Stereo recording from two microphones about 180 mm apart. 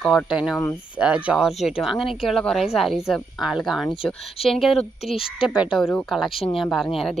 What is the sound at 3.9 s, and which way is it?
Speech, 30° left (ahead or behind).